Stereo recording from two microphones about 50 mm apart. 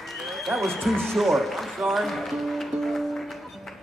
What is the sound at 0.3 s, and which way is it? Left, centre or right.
Applause, centre.